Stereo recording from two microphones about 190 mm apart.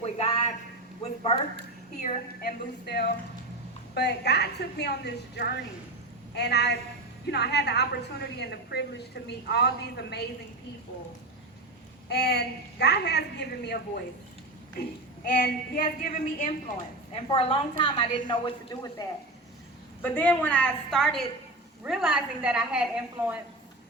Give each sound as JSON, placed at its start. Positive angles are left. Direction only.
{"t": 0.0, "sound": "a sound", "side_deg": 30}
{"t": 1.0, "sound": "a woman's voice", "side_deg": 35}
{"t": 2.0, "sound": "a woman's voice", "side_deg": 45}
{"t": 12.0, "sound": "a woman's voice", "side_deg": 60}
{"t": 15.4, "sound": "a woman's voice", "side_deg": 45}
{"t": 17.1, "sound": "a woman's voice", "side_deg": 30}
{"t": 20.0, "sound": "a woman's voice", "side_deg": 10}